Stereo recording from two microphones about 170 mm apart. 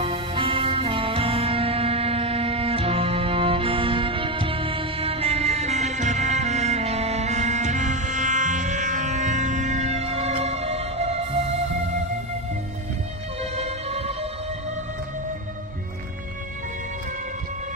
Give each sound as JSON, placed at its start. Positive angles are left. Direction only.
{"t": 0.0, "sound": "music", "side_deg": -30}
{"t": 13.4, "sound": "music", "side_deg": -40}